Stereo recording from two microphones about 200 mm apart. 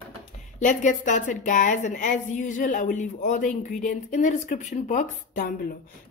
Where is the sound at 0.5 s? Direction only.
40° left (ahead or behind).